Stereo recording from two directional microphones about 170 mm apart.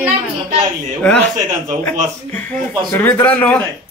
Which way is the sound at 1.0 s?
5° left (ahead or behind).